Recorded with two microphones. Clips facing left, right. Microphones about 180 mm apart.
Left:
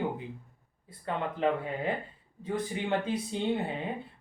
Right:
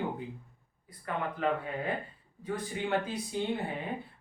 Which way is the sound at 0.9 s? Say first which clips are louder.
Left 2 dB; 25° left (ahead or behind).